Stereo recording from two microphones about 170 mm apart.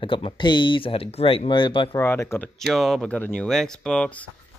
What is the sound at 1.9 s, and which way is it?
Speech, 15° left (ahead or behind).